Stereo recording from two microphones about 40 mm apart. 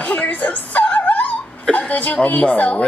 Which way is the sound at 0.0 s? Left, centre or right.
Left.